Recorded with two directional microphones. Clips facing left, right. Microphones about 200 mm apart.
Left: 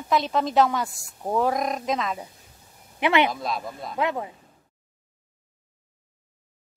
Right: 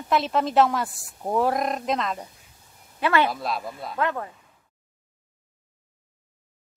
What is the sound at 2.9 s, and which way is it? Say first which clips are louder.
Speech: left 1 dB; 15° left (ahead or behind).